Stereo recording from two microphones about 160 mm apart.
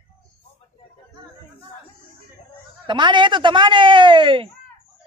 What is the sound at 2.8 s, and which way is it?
Speech, 30° right (ahead or behind).